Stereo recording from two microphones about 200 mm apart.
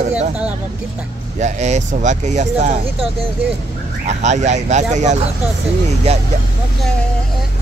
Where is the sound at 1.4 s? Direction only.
35° right (ahead or behind).